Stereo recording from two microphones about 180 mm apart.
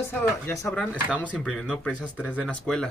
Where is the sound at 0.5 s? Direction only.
15° left (ahead or behind).